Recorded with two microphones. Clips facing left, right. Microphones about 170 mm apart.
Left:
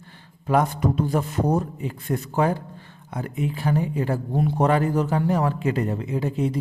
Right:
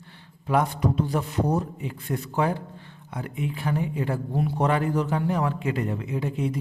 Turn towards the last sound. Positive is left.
turn(degrees=35)  # may be behind; listen again after turning